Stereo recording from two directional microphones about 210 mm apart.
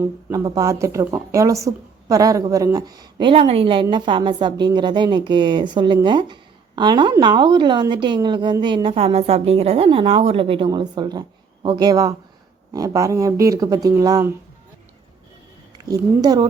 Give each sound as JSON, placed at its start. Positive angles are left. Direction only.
{"t": 0.0, "sound": "a woman's voice", "side_deg": -15}
{"t": 15.9, "sound": "speech", "side_deg": -20}